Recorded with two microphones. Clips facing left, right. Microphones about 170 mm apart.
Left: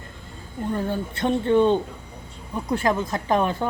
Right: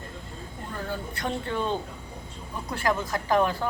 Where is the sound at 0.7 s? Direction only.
25° left (ahead or behind).